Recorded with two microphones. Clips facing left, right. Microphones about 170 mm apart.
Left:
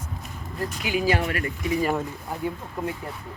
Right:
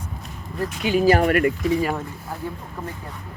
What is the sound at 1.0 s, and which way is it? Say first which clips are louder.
Speech: right 8 dB; 50° right (ahead or behind).